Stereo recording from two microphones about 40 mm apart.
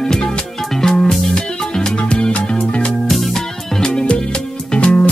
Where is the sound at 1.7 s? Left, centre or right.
Left.